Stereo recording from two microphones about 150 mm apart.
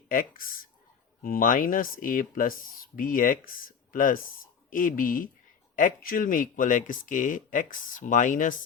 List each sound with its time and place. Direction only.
0.1 s speech: 65° left (ahead or behind)